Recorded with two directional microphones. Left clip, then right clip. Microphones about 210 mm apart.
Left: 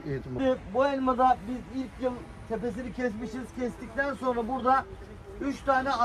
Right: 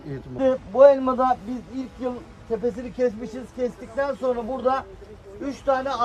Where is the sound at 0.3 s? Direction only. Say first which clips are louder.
Right 9 dB; 40° right (ahead or behind).